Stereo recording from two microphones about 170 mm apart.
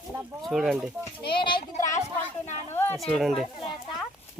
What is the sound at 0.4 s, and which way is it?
Speech, centre (ahead or behind).